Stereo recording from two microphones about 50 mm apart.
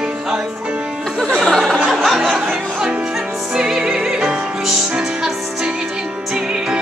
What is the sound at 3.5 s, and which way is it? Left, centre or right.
Music, centre.